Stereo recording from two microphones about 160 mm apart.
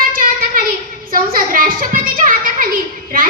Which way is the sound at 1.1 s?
65° right (ahead or behind).